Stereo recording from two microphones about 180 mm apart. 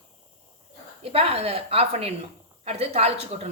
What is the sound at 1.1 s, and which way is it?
A woman's voice, 35° right (ahead or behind).